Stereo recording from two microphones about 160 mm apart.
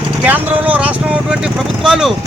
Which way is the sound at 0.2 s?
10° right (ahead or behind).